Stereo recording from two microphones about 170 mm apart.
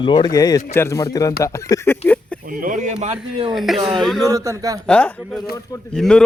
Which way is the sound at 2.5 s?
50° right (ahead or behind).